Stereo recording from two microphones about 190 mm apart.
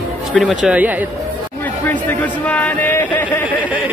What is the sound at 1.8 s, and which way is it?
Speech, 10° left (ahead or behind).